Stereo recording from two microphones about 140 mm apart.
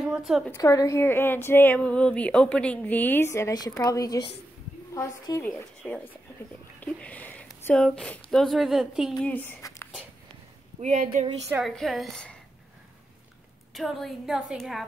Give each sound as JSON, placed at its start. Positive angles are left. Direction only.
{"t": 0.0, "sound": "a woman's voice", "side_deg": -5}
{"t": 0.5, "sound": "a woman's voice", "side_deg": 25}
{"t": 5.4, "sound": "speech", "side_deg": 10}
{"t": 6.8, "sound": "a sound", "side_deg": 10}
{"t": 7.6, "sound": "a woman's voice", "side_deg": 5}
{"t": 9.1, "sound": "speech", "side_deg": 10}
{"t": 9.6, "sound": "a sound", "side_deg": 25}
{"t": 10.8, "sound": "speech", "side_deg": -55}
{"t": 11.6, "sound": "a woman's voice", "side_deg": 0}
{"t": 13.7, "sound": "a woman's voice", "side_deg": 0}